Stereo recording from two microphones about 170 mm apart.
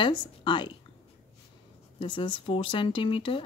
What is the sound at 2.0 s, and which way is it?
Speech, 30° left (ahead or behind).